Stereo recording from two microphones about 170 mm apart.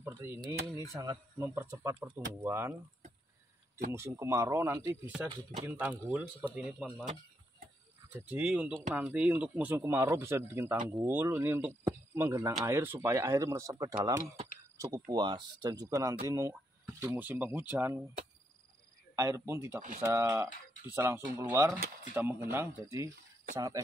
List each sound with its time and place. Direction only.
0.0 s speech: 15° right (ahead or behind)
3.9 s speech: 15° right (ahead or behind)
8.1 s speech: 10° right (ahead or behind)
15.0 s speech: 25° right (ahead or behind)
19.1 s speech: 15° right (ahead or behind)
23.5 s cricket: 20° right (ahead or behind)